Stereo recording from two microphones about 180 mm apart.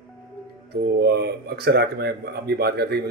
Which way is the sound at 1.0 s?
65° right (ahead or behind).